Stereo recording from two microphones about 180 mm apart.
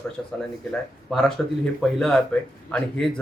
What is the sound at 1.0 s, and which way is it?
Speech, centre (ahead or behind).